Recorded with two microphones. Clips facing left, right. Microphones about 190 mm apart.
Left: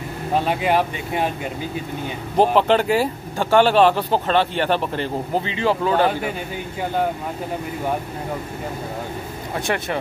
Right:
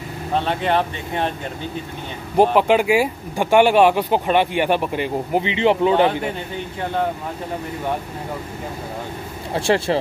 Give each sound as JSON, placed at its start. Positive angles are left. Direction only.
{"t": 0.3, "sound": "speech", "side_deg": 5}
{"t": 2.3, "sound": "speech", "side_deg": -10}
{"t": 9.5, "sound": "speech", "side_deg": -30}